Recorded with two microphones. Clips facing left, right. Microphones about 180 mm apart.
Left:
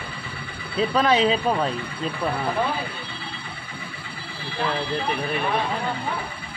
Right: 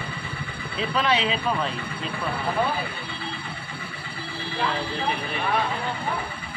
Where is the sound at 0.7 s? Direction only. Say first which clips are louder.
Left 5 dB; 40° left (ahead or behind).